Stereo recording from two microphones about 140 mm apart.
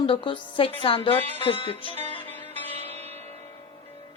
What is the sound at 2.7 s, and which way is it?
Music, 45° right (ahead or behind).